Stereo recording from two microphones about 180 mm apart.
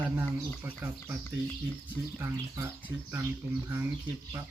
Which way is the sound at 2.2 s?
15° right (ahead or behind).